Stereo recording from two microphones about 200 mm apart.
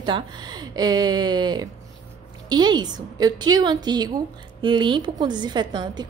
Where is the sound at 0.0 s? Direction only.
20° right (ahead or behind).